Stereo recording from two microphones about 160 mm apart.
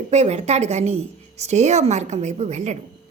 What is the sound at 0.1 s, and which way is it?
Speech, 45° right (ahead or behind).